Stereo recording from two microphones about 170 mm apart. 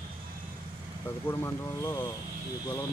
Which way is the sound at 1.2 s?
15° left (ahead or behind).